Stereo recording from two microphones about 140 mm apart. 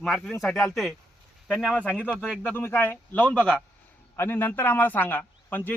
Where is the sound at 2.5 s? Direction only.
15° left (ahead or behind).